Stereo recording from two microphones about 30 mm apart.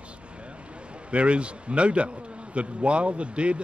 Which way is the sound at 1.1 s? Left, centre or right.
Right.